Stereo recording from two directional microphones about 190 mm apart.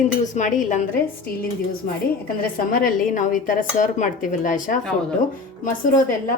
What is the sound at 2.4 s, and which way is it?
A woman's voice, 50° left (ahead or behind).